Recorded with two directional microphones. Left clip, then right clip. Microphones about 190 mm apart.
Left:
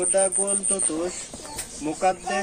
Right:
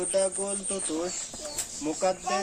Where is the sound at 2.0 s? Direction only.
20° right (ahead or behind).